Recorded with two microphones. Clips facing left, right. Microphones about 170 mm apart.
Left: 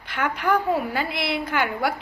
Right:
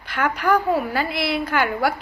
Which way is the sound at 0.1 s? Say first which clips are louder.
Right 3 dB; 25° left (ahead or behind).